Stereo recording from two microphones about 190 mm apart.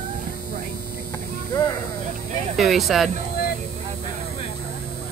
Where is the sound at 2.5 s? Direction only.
Centre (ahead or behind).